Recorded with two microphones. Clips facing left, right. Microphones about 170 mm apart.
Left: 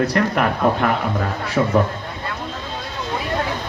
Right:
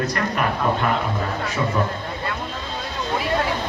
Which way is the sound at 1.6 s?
55° left (ahead or behind).